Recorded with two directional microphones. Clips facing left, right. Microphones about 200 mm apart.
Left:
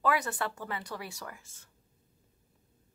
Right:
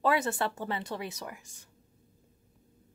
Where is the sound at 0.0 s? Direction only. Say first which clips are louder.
Right 3 dB; 25° right (ahead or behind).